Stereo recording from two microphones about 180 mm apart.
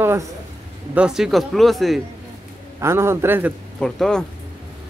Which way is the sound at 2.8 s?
15° right (ahead or behind).